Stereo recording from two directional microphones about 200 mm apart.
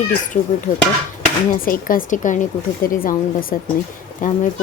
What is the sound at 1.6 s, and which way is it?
A woman's voice, 45° left (ahead or behind).